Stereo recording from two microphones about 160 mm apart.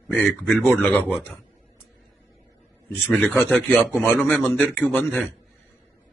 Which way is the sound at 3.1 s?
Centre (ahead or behind).